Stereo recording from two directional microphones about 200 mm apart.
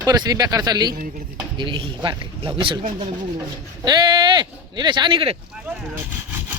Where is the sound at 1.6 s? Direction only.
25° right (ahead or behind).